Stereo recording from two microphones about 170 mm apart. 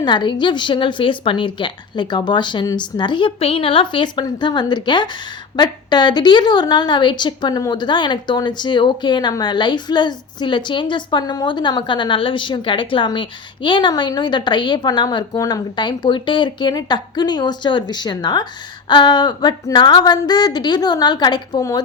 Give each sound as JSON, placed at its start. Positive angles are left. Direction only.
{"t": 0.0, "sound": "a woman's voice", "side_deg": 25}